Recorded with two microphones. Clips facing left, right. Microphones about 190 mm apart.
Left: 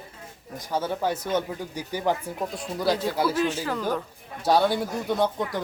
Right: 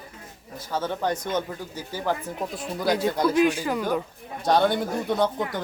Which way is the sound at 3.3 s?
15° right (ahead or behind).